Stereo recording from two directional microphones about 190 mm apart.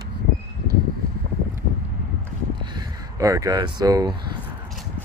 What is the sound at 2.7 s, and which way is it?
Speech, 15° right (ahead or behind).